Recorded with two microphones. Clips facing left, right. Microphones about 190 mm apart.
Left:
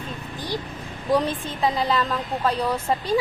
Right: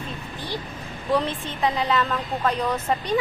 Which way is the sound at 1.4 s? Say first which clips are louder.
Left 1 dB; 35° left (ahead or behind).